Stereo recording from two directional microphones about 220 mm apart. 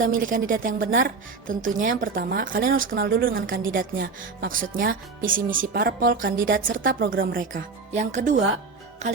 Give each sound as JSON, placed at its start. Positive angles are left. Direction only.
{"t": 0.2, "sound": "speech", "side_deg": -40}
{"t": 9.0, "sound": "music", "side_deg": -30}